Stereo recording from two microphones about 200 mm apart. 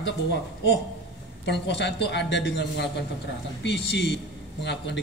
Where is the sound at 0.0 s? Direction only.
60° left (ahead or behind).